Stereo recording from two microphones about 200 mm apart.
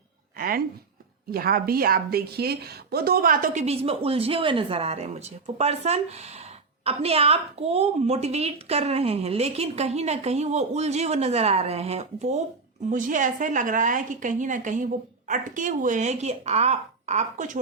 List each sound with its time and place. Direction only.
0.3 s a woman's voice: 45° right (ahead or behind)